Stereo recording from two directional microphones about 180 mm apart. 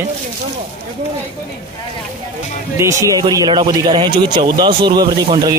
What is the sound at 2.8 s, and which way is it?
A man's voice, 15° right (ahead or behind).